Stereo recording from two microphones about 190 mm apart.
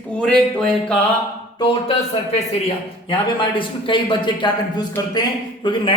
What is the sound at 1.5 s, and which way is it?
A man's voice, 25° left (ahead or behind).